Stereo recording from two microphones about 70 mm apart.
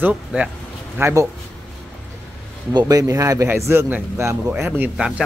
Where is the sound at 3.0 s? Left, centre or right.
Right.